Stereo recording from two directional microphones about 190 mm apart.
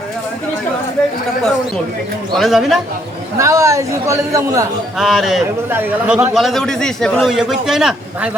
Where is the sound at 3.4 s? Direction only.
15° right (ahead or behind).